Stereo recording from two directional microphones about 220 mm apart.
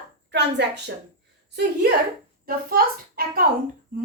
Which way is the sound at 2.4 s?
40° right (ahead or behind).